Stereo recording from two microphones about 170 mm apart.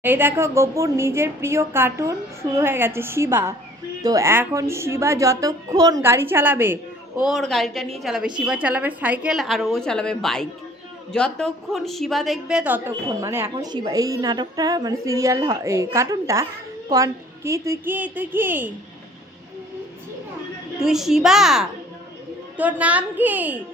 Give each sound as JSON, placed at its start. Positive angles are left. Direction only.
{"t": 0.0, "sound": "a woman's voice", "side_deg": -10}
{"t": 7.2, "sound": "a woman's voice", "side_deg": 0}
{"t": 20.7, "sound": "a woman's voice", "side_deg": 0}